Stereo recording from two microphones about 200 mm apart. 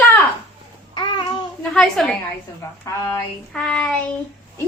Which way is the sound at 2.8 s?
15° left (ahead or behind).